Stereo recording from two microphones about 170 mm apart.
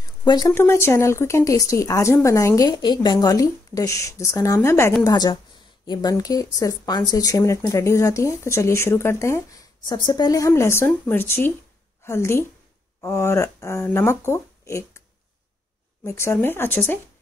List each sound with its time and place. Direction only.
0.2 s a woman's voice: 25° left (ahead or behind)
16.1 s speech: 15° left (ahead or behind)